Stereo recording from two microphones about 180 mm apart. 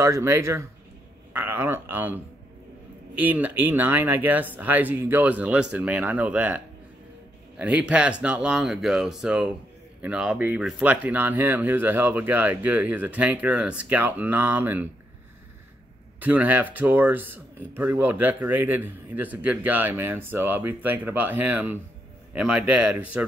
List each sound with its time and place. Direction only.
0.0 s speech: 15° right (ahead or behind)
3.2 s speech: 10° right (ahead or behind)
16.2 s speech: 10° right (ahead or behind)